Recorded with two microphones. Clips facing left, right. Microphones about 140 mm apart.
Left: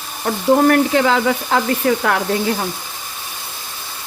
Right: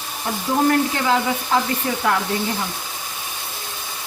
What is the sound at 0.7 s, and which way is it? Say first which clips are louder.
Frying: left 4 dB; 85° left.